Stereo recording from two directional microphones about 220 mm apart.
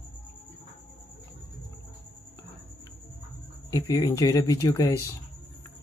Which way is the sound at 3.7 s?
15° left (ahead or behind).